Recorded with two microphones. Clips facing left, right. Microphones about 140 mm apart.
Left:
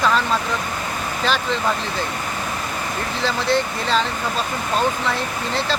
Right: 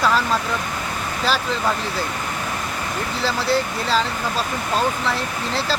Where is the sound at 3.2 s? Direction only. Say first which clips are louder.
Left 1 dB; 5° right (ahead or behind).